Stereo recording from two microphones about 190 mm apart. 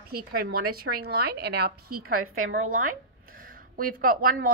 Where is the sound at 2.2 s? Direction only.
90° right.